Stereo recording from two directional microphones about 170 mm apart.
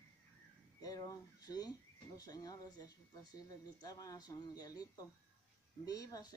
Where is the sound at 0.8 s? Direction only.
20° left (ahead or behind).